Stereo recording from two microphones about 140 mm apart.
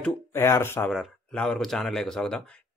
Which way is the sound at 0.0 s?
15° left (ahead or behind).